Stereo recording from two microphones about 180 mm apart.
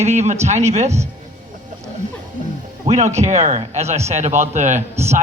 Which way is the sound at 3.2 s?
40° right (ahead or behind).